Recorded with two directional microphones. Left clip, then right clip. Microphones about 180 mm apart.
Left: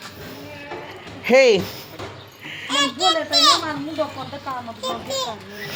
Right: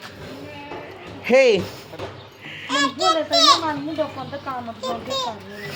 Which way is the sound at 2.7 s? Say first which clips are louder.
Even; 35° right (ahead or behind).